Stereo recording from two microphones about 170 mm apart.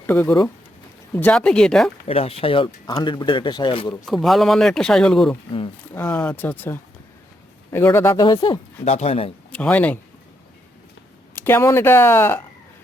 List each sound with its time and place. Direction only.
0.1 s speech: 10° left (ahead or behind)
2.0 s speech: 35° left (ahead or behind)
4.0 s speech: centre (ahead or behind); by 8.5 s 25° left (ahead or behind)
8.8 s speech: 40° left (ahead or behind)
9.5 s speech: 10° left (ahead or behind)
11.3 s speech: 10° left (ahead or behind)